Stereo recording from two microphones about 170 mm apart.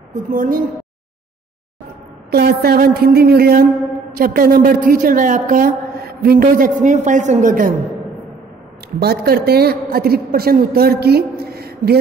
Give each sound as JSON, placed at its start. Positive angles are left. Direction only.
{"t": 0.1, "sound": "a woman's voice", "side_deg": -50}
{"t": 2.3, "sound": "a woman's voice", "side_deg": -65}
{"t": 9.0, "sound": "a woman's voice", "side_deg": -70}